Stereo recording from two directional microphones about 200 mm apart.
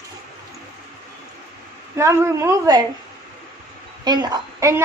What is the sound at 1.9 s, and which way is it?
Speech, 15° right (ahead or behind).